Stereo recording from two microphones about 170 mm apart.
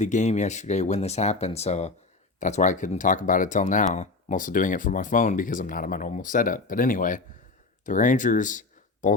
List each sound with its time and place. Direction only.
0.0 s speech: 45° left (ahead or behind)